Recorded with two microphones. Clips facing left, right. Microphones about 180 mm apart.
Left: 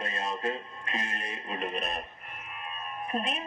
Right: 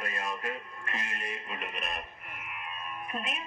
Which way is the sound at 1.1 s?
30° left (ahead or behind).